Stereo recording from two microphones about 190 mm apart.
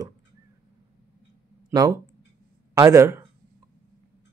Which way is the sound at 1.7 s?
20° right (ahead or behind).